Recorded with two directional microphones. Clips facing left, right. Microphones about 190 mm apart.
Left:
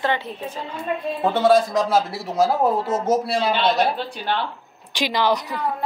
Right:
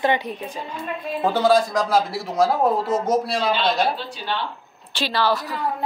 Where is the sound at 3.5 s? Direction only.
55° left (ahead or behind).